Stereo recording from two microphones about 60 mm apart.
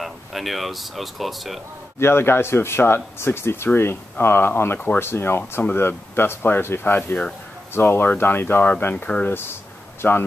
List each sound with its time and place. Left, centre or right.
0.0 s speech: centre
2.0 s speech: left
9.2 s speech: left